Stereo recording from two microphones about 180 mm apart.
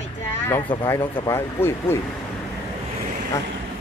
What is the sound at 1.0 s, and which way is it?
Speech, 25° left (ahead or behind).